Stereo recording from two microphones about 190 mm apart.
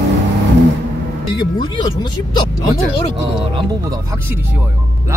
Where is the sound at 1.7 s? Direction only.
25° left (ahead or behind).